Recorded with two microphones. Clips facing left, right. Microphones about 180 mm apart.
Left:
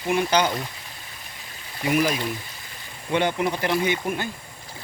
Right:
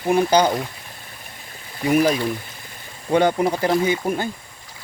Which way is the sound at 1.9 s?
40° right (ahead or behind).